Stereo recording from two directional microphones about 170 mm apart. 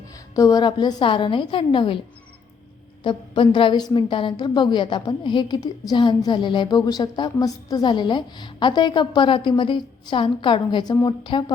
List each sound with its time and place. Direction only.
0.3 s a woman's voice: 20° left (ahead or behind)
3.0 s a woman's voice: 30° left (ahead or behind)